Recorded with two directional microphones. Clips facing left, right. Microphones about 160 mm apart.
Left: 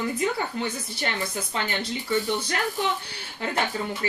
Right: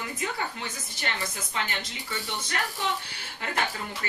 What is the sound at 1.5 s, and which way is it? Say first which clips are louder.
Speech: left 4 dB; 35° left (ahead or behind).